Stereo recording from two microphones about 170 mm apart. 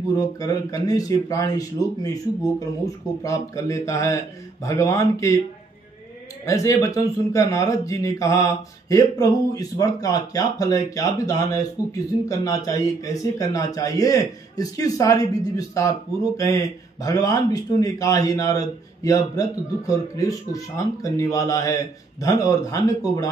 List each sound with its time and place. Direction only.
0.2 s speech: 20° left (ahead or behind)
2.8 s speech: 20° left (ahead or behind)
6.4 s speech: 20° left (ahead or behind)